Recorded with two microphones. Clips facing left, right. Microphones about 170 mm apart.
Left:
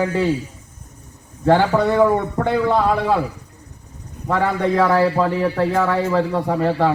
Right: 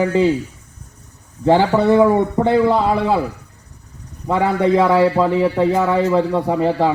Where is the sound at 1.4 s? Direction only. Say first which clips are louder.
Right 2 dB; 15° right (ahead or behind).